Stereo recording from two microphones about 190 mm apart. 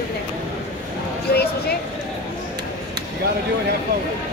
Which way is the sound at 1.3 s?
55° left (ahead or behind).